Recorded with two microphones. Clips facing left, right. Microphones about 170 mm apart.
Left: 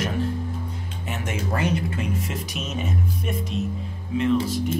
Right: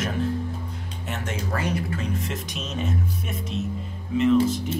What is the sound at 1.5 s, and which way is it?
Speech, 20° left (ahead or behind).